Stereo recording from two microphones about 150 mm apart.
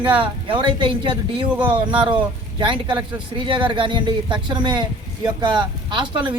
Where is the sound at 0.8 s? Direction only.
35° right (ahead or behind).